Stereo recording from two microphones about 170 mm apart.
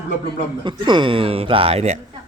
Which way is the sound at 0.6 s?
25° right (ahead or behind).